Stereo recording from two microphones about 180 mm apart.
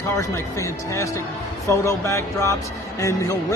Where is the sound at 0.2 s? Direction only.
15° left (ahead or behind).